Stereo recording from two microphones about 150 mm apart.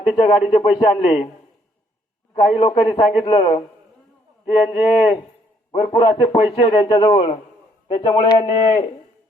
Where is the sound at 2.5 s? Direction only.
35° left (ahead or behind).